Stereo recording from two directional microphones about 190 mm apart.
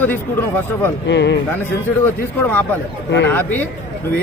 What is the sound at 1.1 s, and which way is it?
Speech, 65° left (ahead or behind).